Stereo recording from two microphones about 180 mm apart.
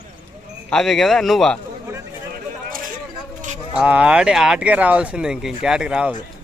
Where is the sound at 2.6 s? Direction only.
50° right (ahead or behind).